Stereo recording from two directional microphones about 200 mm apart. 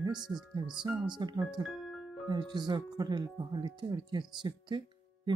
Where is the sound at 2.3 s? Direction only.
20° right (ahead or behind).